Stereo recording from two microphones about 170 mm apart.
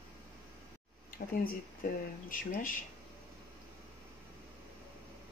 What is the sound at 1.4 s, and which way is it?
Speech, 55° left (ahead or behind).